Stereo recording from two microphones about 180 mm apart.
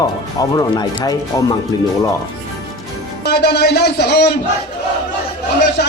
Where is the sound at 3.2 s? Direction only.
65° left (ahead or behind).